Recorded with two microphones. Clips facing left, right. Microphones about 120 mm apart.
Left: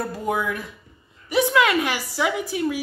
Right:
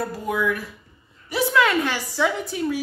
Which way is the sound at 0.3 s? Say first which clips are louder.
Right 1 dB; 25° left (ahead or behind).